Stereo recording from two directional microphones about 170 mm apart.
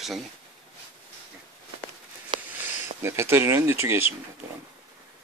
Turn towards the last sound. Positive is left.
turn(degrees=-15)  # may be behind; listen again after turning